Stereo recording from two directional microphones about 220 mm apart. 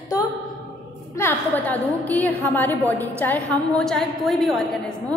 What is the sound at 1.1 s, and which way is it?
A woman's voice, 10° left (ahead or behind).